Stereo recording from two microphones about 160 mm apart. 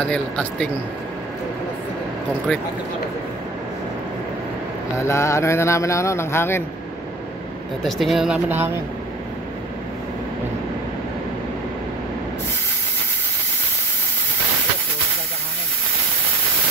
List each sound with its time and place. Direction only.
0.0 s speech: 5° left (ahead or behind)
4.9 s speech: 15° left (ahead or behind)
7.8 s speech: centre (ahead or behind)